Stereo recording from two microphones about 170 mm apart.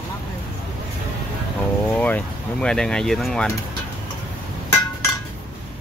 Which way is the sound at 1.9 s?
10° left (ahead or behind).